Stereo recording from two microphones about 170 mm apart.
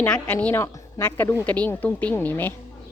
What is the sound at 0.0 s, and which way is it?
A woman's voice, 10° left (ahead or behind).